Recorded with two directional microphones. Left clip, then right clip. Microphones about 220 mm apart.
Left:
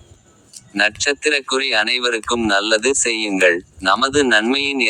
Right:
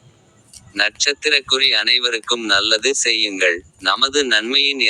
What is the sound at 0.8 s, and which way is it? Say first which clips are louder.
Speech: left 1 dB; 5° right (ahead or behind).